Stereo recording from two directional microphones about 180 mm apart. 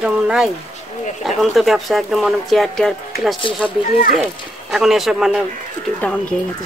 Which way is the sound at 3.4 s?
30° left (ahead or behind).